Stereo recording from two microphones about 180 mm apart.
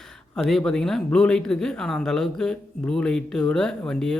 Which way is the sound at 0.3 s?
Centre (ahead or behind).